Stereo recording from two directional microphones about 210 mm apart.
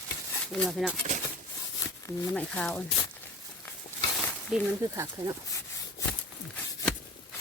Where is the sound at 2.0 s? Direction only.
5° left (ahead or behind).